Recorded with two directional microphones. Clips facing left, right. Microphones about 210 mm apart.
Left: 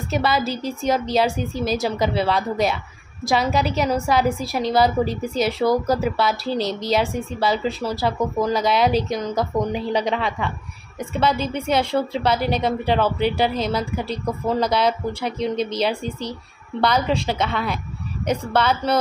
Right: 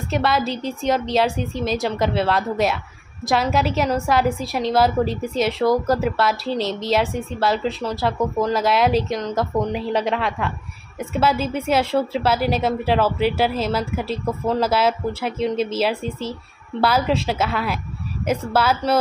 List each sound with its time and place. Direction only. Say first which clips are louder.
0.1 s a woman's voice: right 1 dB; centre (ahead or behind)